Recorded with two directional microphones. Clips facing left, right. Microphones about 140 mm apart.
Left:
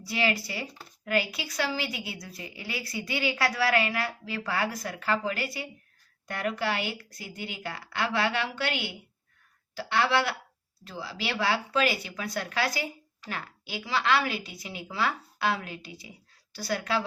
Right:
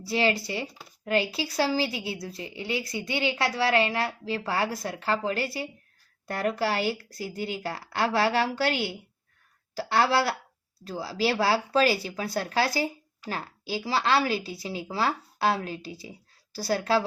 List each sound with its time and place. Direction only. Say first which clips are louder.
0.0 s a woman's voice: right 3 dB; 30° right (ahead or behind)